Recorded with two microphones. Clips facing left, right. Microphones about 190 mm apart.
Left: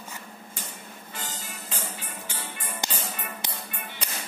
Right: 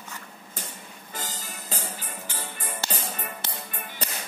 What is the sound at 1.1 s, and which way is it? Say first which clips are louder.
Music: right 2 dB; 35° right (ahead or behind).